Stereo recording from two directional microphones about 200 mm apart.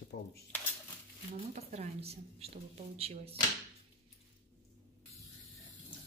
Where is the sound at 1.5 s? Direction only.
35° right (ahead or behind).